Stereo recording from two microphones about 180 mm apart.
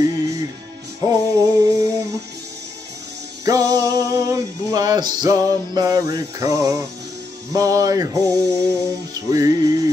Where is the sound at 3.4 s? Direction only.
20° right (ahead or behind).